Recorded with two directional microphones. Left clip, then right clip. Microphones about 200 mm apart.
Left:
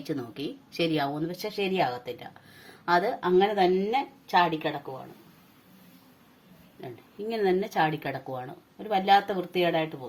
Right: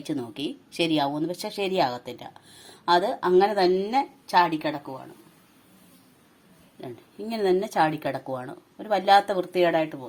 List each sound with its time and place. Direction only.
0.0 s speech: 20° right (ahead or behind)
6.8 s speech: 25° right (ahead or behind)